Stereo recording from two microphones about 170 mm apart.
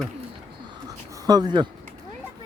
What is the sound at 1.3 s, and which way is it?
Speech, 25° right (ahead or behind).